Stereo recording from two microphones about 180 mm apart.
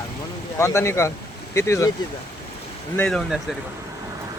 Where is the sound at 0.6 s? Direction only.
15° left (ahead or behind).